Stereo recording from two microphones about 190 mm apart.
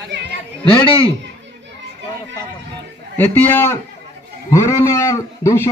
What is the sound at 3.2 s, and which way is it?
A man's voice, 10° left (ahead or behind).